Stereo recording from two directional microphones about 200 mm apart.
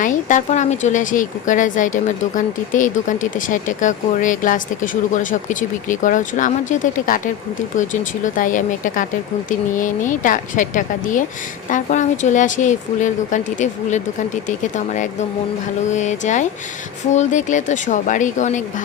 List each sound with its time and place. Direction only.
0.0 s speech: 40° left (ahead or behind)